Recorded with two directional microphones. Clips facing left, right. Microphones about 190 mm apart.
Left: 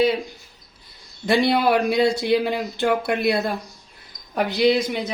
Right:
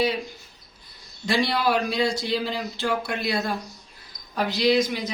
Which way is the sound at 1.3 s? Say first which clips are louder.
Left 5 dB; 60° left (ahead or behind).